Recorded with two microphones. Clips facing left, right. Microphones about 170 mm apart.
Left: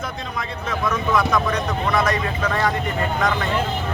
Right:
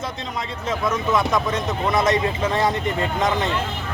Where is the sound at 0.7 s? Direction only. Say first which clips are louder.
Even; 20° right (ahead or behind).